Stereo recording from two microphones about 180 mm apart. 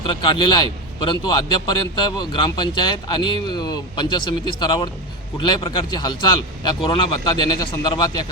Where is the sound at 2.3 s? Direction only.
25° left (ahead or behind).